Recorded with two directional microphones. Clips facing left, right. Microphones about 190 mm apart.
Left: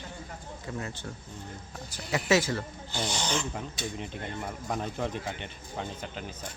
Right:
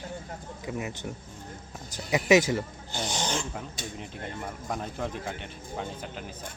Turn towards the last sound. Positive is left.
turn(degrees=-5)  # may be behind; listen again after turning